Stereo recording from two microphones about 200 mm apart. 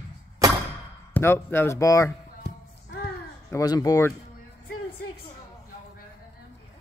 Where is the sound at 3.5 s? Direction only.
15° left (ahead or behind).